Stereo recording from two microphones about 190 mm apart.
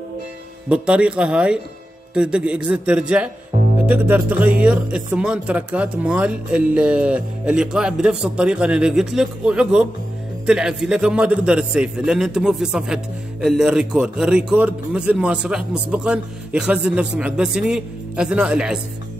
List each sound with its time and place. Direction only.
0.7 s a man's voice: 5° right (ahead or behind)
3.5 s music: 40° right (ahead or behind)
3.9 s a man's voice: 10° right (ahead or behind)